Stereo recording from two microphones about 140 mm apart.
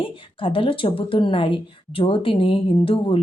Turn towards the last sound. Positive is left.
turn(degrees=40)  # may be behind; listen again after turning